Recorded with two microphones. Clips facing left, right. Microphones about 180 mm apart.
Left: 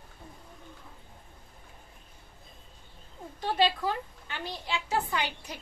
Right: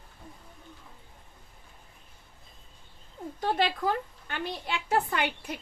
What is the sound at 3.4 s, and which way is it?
A woman's voice, 50° right (ahead or behind).